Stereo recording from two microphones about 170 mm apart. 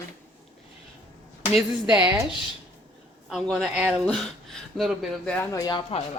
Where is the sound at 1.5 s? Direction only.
5° right (ahead or behind).